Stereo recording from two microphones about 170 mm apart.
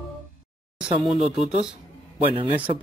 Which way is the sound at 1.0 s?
Centre (ahead or behind).